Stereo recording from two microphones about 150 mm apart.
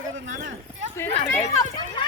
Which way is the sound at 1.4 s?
50° left (ahead or behind).